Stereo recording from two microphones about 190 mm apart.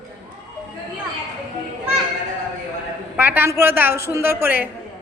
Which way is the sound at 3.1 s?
10° right (ahead or behind).